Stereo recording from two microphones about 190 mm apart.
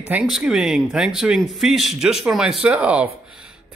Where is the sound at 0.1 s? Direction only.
5° right (ahead or behind).